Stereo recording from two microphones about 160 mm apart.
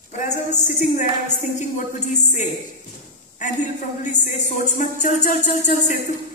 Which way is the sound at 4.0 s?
50° left (ahead or behind).